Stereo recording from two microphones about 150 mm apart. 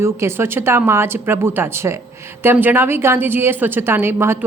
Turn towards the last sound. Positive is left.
turn(degrees=-15)  # may be behind; listen again after turning